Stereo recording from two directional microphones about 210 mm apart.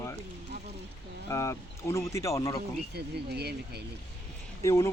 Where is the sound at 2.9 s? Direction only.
50° right (ahead or behind).